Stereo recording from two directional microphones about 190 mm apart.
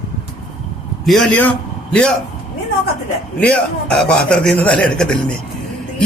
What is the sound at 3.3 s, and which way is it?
A man's voice, 5° left (ahead or behind).